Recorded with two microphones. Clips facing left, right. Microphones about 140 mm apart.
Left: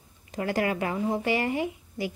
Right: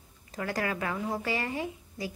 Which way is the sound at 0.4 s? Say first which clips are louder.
Left 5 dB; 25° left (ahead or behind).